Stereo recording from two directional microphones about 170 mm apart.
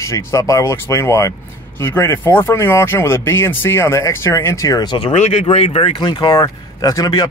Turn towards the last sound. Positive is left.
turn(degrees=25)  # may be behind; listen again after turning